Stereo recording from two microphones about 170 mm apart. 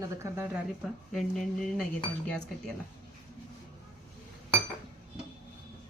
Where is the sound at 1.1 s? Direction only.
Centre (ahead or behind).